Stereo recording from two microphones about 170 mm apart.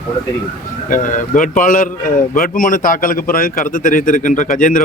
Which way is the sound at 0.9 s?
50° left (ahead or behind).